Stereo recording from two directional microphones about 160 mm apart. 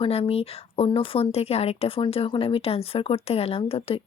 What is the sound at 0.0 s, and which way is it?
Speech, 40° left (ahead or behind).